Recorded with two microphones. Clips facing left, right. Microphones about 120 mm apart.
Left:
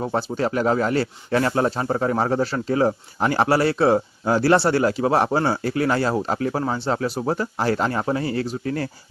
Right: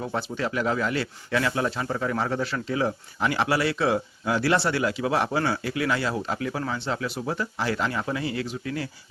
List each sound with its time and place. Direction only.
0.0 s speech: 35° left (ahead or behind)